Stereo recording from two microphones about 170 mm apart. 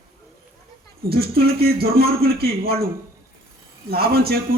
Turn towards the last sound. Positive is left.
turn(degrees=-65)  # may be behind; listen again after turning